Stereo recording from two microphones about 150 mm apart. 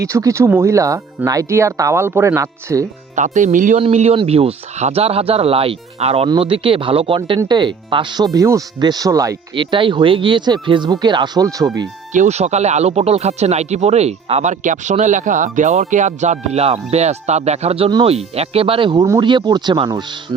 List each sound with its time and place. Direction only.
0.0 s speech: 20° right (ahead or behind)
3.2 s speech: 55° right (ahead or behind)
3.8 s speech: 45° right (ahead or behind)
7.2 s speech: 25° right (ahead or behind)
9.6 s speech: 35° right (ahead or behind)
12.1 s speech: 50° right (ahead or behind); by 20.1 s 30° right (ahead or behind)